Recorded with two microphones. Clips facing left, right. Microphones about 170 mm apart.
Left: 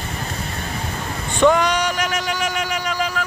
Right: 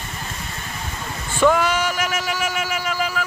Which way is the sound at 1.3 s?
5° right (ahead or behind).